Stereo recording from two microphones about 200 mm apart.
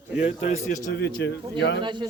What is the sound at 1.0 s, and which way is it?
Speech, 55° left (ahead or behind).